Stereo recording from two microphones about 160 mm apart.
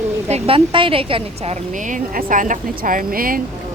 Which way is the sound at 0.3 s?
40° right (ahead or behind).